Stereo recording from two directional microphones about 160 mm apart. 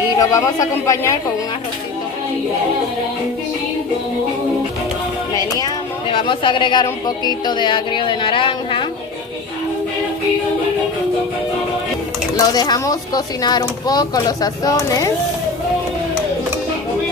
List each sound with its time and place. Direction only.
0.2 s speech: 20° left (ahead or behind)
5.3 s a woman's voice: 25° left (ahead or behind)
12.4 s speech: 25° left (ahead or behind)